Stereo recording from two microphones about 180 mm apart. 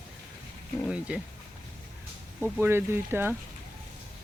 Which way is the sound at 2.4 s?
5° right (ahead or behind).